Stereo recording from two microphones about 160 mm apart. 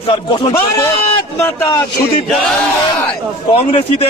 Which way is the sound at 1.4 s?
20° left (ahead or behind).